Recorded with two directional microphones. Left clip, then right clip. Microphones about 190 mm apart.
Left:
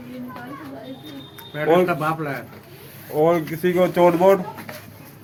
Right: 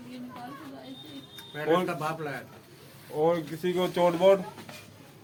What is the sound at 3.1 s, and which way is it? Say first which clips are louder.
Speech: left 8 dB; 45° left (ahead or behind).